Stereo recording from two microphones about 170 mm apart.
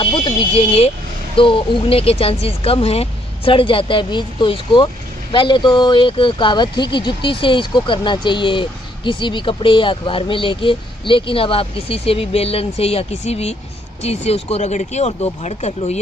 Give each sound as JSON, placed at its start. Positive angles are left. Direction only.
{"t": 0.0, "sound": "a woman's voice", "side_deg": 30}